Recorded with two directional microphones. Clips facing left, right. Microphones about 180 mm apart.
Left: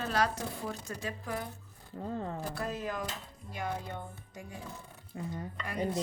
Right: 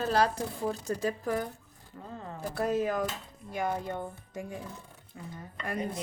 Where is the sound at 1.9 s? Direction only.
35° left (ahead or behind).